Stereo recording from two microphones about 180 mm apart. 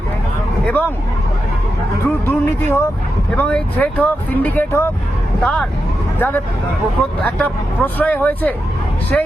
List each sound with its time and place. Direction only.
0.6 s speech: 10° left (ahead or behind)
2.0 s speech: 10° left (ahead or behind)
7.2 s speech: 10° left (ahead or behind)